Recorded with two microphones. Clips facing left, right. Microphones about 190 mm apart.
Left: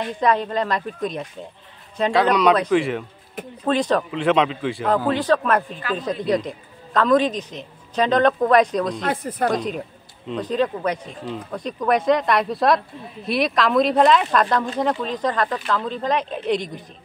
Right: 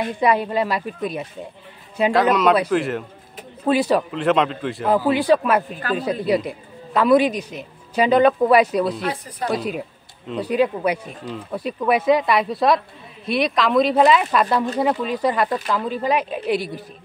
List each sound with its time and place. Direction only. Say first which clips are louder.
0.0 s a woman's voice: right 1 dB; 10° right (ahead or behind)
9.0 s speech: left 3 dB; 50° left (ahead or behind)
9.5 s a woman's voice: even; 5° right (ahead or behind)